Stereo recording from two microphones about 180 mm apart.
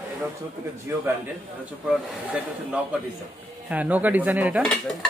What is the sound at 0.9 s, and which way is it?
Speech, 15° right (ahead or behind).